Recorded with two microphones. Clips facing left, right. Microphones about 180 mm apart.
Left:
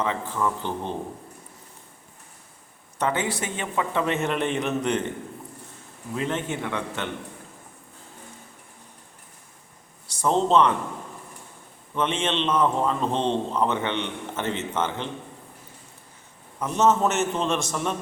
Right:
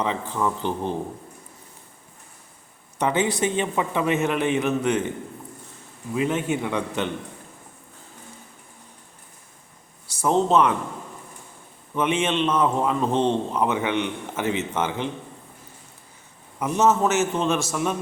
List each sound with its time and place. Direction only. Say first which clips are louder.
0.0 s a man's voice: right 1 dB; 15° right (ahead or behind)
3.0 s a man's voice: right 4 dB; 20° right (ahead or behind)
6.1 s a man's voice: right 4 dB; 10° right (ahead or behind)
10.1 s speech: right 1 dB; 10° right (ahead or behind)
11.9 s a man's voice: right 3 dB; 10° right (ahead or behind)
16.6 s a man's voice: right 1 dB; 10° right (ahead or behind)